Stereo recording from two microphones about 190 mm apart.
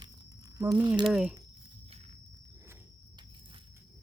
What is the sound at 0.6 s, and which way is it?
Speech, 15° right (ahead or behind).